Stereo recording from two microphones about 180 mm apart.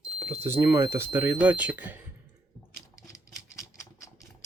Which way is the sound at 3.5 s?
15° left (ahead or behind).